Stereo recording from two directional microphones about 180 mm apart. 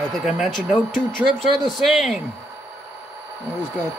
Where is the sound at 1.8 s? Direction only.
Centre (ahead or behind).